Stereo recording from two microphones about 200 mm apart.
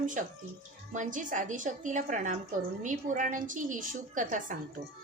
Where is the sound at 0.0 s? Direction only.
40° right (ahead or behind).